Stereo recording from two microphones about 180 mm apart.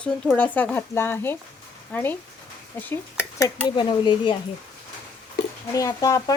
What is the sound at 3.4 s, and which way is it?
Speech, 25° left (ahead or behind).